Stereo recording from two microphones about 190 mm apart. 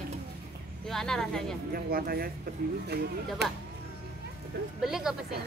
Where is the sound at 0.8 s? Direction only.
Centre (ahead or behind).